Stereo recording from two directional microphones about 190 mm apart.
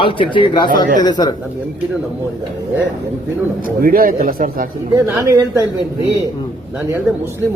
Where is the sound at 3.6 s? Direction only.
50° right (ahead or behind).